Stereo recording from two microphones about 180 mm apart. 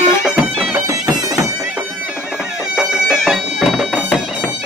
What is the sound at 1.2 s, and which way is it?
Bagpipes, 15° right (ahead or behind).